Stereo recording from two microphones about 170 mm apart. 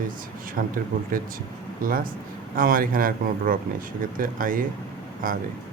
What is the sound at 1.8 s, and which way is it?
Speech, 55° right (ahead or behind).